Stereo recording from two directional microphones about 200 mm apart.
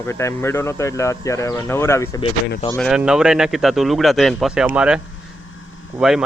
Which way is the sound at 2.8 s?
5° right (ahead or behind).